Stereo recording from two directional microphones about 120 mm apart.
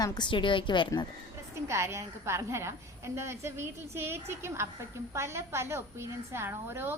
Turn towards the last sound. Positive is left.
turn(degrees=-20)  # may be behind; listen again after turning